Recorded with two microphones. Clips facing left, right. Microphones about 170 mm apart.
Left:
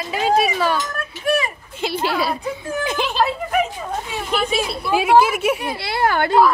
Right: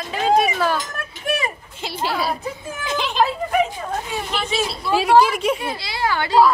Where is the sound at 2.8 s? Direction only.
55° left (ahead or behind).